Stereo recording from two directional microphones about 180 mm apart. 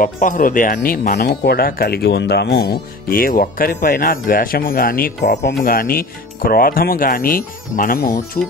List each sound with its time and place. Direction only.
0.0 s speech: 50° left (ahead or behind)